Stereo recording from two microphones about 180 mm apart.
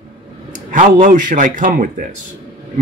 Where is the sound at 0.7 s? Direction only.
45° right (ahead or behind).